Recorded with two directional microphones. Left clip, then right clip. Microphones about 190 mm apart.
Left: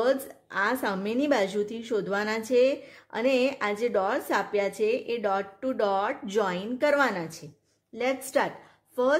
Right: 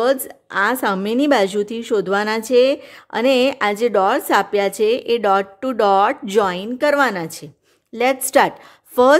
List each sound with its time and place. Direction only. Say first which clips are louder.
0.0 s a woman's voice: right 8 dB; 40° right (ahead or behind)